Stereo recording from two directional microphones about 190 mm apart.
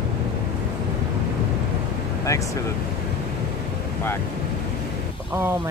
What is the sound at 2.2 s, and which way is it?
Speech, 15° left (ahead or behind).